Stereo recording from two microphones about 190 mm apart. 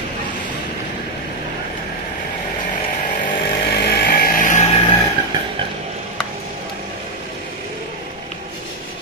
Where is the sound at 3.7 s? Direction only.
55° left (ahead or behind).